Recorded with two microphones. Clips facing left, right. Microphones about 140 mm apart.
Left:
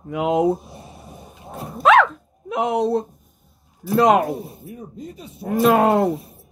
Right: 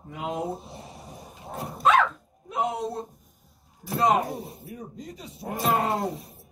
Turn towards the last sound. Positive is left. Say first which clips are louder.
# left 10 dB
turn(degrees=70)  # may be behind; listen again after turning